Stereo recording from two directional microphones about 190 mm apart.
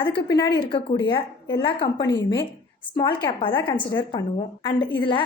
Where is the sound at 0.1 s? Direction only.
65° left (ahead or behind).